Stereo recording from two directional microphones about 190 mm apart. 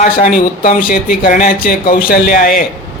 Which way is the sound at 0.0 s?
45° left (ahead or behind).